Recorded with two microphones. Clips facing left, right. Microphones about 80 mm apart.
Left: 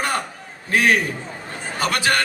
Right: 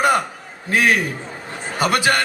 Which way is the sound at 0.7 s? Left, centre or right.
Centre.